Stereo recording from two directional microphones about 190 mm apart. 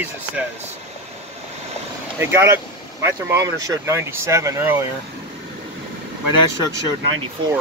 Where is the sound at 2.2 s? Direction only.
15° right (ahead or behind).